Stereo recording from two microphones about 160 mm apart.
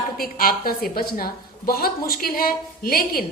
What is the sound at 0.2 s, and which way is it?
A woman's voice, 65° left (ahead or behind).